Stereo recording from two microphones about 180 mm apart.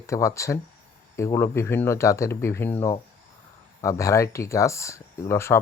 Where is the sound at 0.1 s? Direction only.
15° left (ahead or behind).